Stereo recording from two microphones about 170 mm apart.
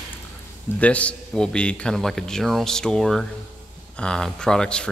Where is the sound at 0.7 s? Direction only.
10° left (ahead or behind).